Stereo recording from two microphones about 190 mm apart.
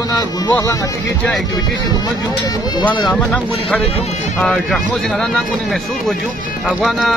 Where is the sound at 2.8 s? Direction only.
25° left (ahead or behind).